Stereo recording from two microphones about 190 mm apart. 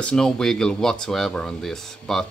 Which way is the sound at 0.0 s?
5° left (ahead or behind).